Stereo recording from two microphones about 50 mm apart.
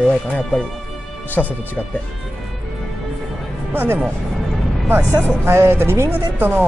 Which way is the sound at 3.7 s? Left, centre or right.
Right.